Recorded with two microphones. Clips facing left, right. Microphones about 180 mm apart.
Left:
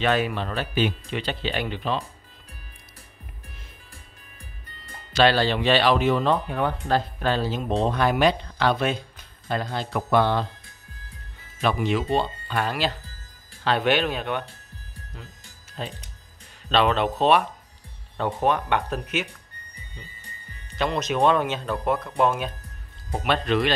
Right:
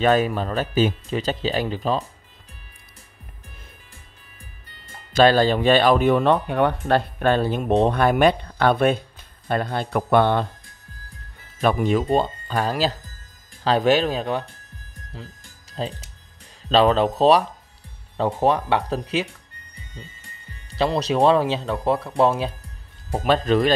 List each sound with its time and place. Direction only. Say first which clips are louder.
0.0 s speech: right 5 dB; 40° right (ahead or behind)
5.1 s speech: right 4 dB; 45° right (ahead or behind)
11.6 s speech: right 4 dB; 50° right (ahead or behind)
15.8 s speech: right 5 dB; 30° right (ahead or behind)
20.7 s speech: right 4 dB; 35° right (ahead or behind)